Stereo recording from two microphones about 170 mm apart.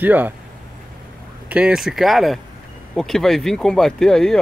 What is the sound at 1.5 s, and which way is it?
Speech, 5° right (ahead or behind).